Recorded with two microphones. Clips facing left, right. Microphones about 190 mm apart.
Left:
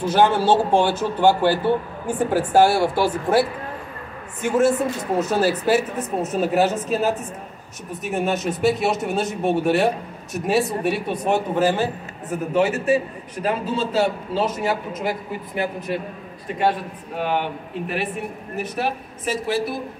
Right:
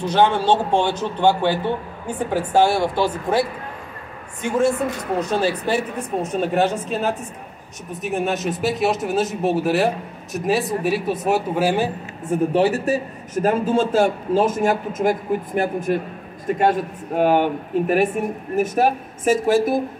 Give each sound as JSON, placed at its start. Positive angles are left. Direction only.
{"t": 0.0, "sound": "a man's voice", "side_deg": 10}
{"t": 12.3, "sound": "a man's voice", "side_deg": -35}